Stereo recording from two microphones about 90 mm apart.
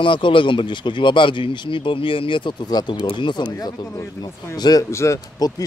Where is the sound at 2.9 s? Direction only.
65° left (ahead or behind).